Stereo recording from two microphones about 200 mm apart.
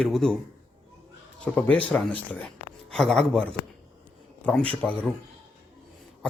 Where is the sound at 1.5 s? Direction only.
5° left (ahead or behind).